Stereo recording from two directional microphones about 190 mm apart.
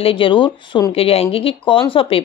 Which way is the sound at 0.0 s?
25° left (ahead or behind).